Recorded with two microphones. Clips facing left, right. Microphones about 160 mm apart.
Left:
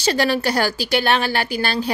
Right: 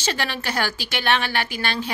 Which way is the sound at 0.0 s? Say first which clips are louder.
Left 8 dB; 35° left (ahead or behind).